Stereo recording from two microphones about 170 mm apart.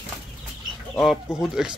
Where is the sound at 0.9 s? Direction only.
5° left (ahead or behind).